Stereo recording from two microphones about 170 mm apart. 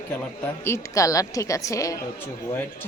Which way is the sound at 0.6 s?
15° left (ahead or behind).